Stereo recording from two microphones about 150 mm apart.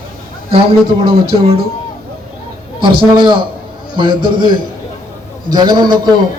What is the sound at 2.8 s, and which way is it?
A man's voice, 30° right (ahead or behind).